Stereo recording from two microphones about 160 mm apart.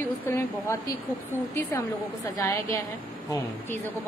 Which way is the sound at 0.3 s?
15° left (ahead or behind).